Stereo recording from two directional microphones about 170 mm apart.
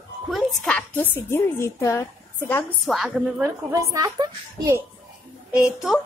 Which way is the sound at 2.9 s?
Centre (ahead or behind).